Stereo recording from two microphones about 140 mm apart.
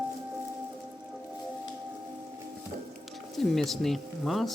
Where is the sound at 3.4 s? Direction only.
Centre (ahead or behind).